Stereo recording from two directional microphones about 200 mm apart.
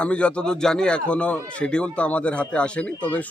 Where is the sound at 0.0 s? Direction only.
5° left (ahead or behind).